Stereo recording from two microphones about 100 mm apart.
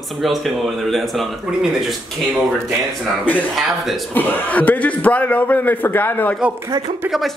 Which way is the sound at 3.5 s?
Centre (ahead or behind).